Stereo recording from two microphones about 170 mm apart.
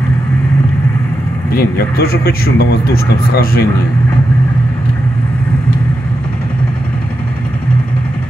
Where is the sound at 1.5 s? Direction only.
60° left (ahead or behind).